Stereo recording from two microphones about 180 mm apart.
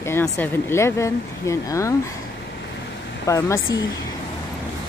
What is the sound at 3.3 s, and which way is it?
Speech, 15° left (ahead or behind).